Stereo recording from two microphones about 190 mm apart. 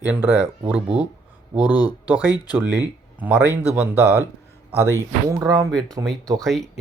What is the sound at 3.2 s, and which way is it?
Speech, 10° right (ahead or behind).